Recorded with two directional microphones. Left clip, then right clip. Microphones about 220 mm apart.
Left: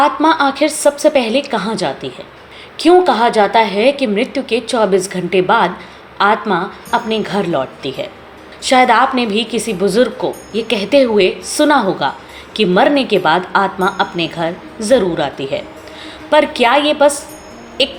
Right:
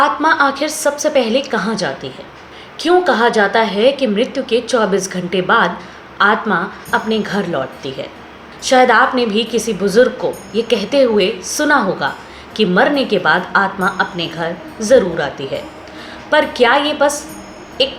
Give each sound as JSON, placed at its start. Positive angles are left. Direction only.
{"t": 0.0, "sound": "a woman's voice", "side_deg": 25}